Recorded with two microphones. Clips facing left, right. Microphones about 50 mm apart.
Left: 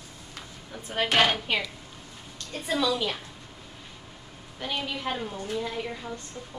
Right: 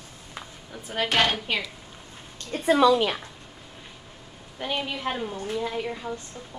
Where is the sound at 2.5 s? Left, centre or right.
Right.